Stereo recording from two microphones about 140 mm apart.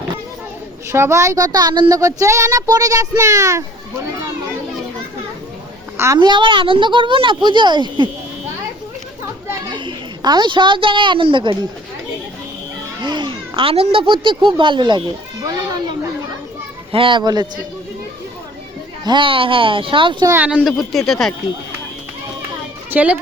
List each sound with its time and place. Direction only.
0.9 s speech: 20° right (ahead or behind)
6.1 s speech: 35° right (ahead or behind)
9.6 s a woman's voice: 35° right (ahead or behind)
13.0 s speech: 35° right (ahead or behind)
15.4 s children playing: 30° right (ahead or behind)
16.9 s speech: 35° right (ahead or behind)
19.0 s speech: 35° right (ahead or behind)
20.2 s speech: 15° right (ahead or behind)
20.7 s speech: centre (ahead or behind)
22.9 s speech: 10° right (ahead or behind)